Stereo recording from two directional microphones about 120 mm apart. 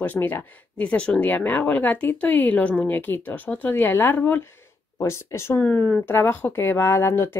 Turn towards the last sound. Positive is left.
turn(degrees=20)  # may be behind; listen again after turning